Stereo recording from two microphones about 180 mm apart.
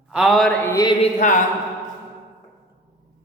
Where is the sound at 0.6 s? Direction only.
15° left (ahead or behind).